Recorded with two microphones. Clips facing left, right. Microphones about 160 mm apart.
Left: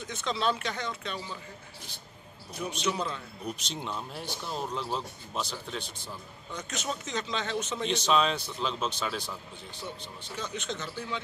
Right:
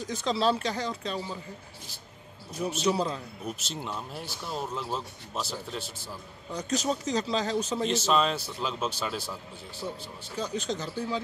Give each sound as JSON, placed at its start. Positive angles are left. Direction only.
{"t": 0.0, "sound": "speech", "side_deg": -35}
{"t": 2.8, "sound": "speech", "side_deg": -35}
{"t": 3.4, "sound": "speech", "side_deg": -5}
{"t": 6.5, "sound": "speech", "side_deg": -35}
{"t": 7.9, "sound": "speech", "side_deg": -5}
{"t": 10.3, "sound": "speech", "side_deg": -35}